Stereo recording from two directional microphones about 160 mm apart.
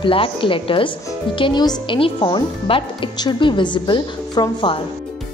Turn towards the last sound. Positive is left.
turn(degrees=30)  # may be behind; listen again after turning